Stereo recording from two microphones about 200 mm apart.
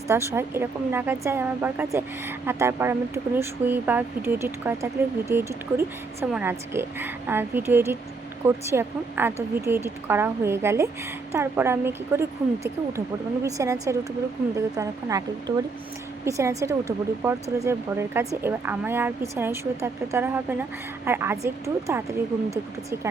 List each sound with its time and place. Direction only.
0.1 s speech: 15° right (ahead or behind)